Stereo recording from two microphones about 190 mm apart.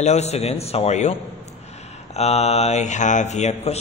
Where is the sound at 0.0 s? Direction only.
35° left (ahead or behind).